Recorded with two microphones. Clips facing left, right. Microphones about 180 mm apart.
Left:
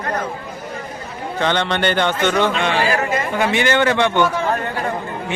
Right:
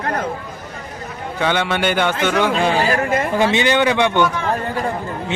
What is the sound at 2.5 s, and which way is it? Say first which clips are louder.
Speech: right 3 dB; 35° right (ahead or behind).